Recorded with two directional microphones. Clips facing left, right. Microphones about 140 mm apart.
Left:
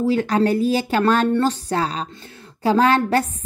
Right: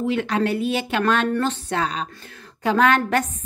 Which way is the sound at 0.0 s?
35° left (ahead or behind).